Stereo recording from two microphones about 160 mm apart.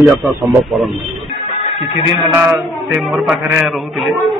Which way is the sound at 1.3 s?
35° left (ahead or behind).